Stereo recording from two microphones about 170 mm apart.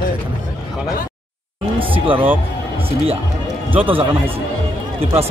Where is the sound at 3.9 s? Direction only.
30° right (ahead or behind).